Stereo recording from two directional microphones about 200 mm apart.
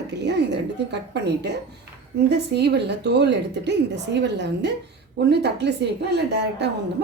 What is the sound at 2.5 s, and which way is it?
A woman's voice, 55° right (ahead or behind).